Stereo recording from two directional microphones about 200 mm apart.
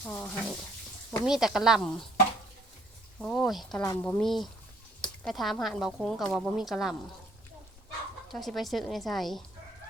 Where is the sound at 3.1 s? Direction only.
Centre (ahead or behind).